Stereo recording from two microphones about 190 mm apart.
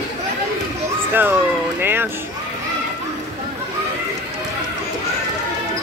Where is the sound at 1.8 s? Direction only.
10° right (ahead or behind).